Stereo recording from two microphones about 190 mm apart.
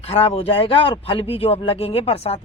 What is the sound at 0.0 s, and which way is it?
Speech, 30° left (ahead or behind).